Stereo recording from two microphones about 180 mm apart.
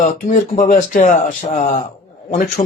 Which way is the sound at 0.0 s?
50° left (ahead or behind).